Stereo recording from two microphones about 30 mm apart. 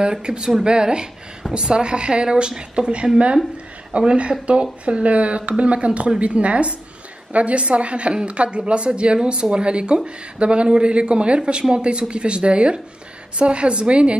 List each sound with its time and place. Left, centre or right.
0.2 s speech: right
2.5 s speech: right
3.9 s speech: right
8.1 s speech: right